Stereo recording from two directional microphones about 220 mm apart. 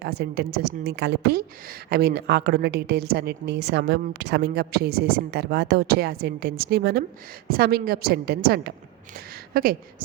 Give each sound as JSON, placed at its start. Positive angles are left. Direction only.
{"t": 0.0, "sound": "a woman's voice", "side_deg": -50}